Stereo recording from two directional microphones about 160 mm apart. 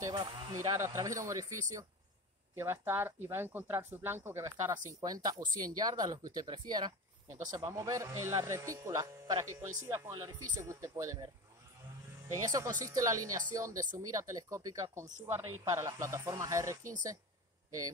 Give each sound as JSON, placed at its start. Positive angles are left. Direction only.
{"t": 0.0, "sound": "speech", "side_deg": -20}
{"t": 12.3, "sound": "speech", "side_deg": -20}